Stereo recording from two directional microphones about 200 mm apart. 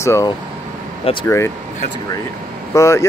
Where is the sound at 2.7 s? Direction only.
15° left (ahead or behind).